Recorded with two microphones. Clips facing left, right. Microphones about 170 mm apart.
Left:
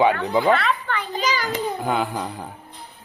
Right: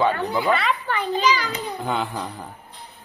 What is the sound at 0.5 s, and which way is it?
Speech, centre (ahead or behind).